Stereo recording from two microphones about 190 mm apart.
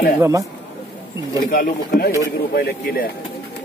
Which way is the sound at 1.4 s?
50° left (ahead or behind).